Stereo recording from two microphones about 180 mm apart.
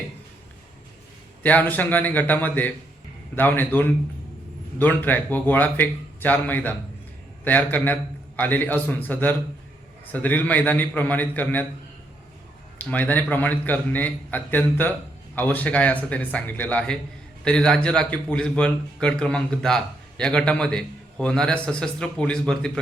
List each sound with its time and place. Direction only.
1.4 s a man's voice: 10° left (ahead or behind)
12.8 s a man's voice: 10° left (ahead or behind)